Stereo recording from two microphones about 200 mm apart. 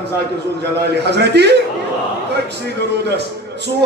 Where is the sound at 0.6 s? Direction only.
60° right (ahead or behind).